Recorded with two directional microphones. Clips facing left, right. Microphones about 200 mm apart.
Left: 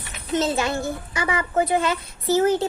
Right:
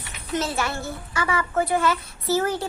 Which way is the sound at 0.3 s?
20° left (ahead or behind).